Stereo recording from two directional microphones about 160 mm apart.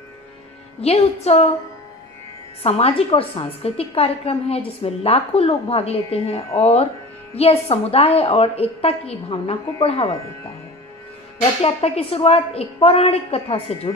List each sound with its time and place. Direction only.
0.7 s a woman's voice: 40° left (ahead or behind)
2.6 s a woman's voice: 35° left (ahead or behind)
11.6 s a woman's voice: 40° left (ahead or behind)